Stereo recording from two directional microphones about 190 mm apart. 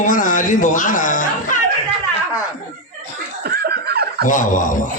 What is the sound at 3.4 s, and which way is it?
Snicker, 55° right (ahead or behind).